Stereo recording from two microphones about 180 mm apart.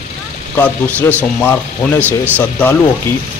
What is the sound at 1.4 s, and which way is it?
A man's voice, 10° left (ahead or behind).